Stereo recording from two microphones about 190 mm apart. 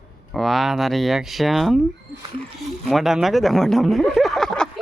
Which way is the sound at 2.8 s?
Centre (ahead or behind).